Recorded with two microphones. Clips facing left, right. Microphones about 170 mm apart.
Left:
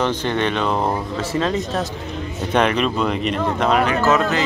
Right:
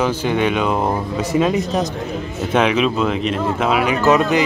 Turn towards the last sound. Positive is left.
turn(degrees=-15)  # may be behind; listen again after turning